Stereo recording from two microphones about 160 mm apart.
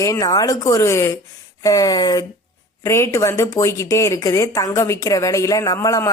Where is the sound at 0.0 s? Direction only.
20° left (ahead or behind).